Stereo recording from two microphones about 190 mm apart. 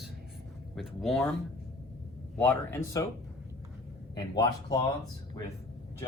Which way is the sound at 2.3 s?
10° left (ahead or behind).